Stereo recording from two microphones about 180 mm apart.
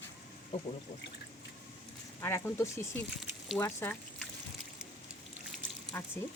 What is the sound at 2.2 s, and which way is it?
Speech, 15° left (ahead or behind).